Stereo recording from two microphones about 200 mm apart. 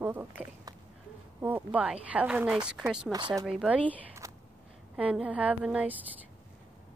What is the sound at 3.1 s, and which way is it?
Speech, 20° right (ahead or behind).